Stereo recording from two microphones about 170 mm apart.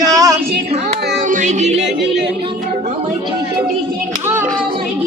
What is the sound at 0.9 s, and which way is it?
Child singing, 85° right.